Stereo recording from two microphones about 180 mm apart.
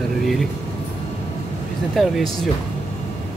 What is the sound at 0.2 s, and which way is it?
Air conditioning, centre (ahead or behind).